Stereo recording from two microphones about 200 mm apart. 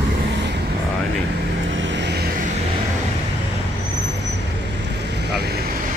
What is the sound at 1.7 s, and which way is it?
Vehicle, 60° right (ahead or behind).